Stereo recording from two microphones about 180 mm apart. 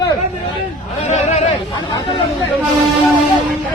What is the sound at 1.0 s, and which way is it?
Speech, 40° left (ahead or behind).